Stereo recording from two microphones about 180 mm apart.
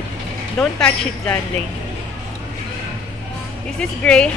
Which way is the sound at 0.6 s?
5° left (ahead or behind).